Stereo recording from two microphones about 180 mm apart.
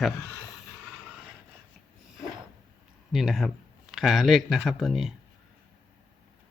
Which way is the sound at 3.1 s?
Centre (ahead or behind).